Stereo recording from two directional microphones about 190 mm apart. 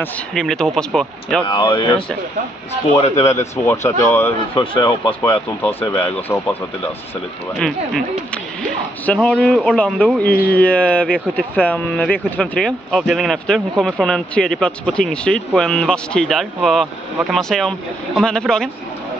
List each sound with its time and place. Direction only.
0.0 s speech: 5° left (ahead or behind)
1.4 s speech: 25° left (ahead or behind)
3.3 s speech: 15° left (ahead or behind)
4.6 s speech: 25° left (ahead or behind)
6.0 s speech: 10° left (ahead or behind)
7.5 s speech: 5° left (ahead or behind)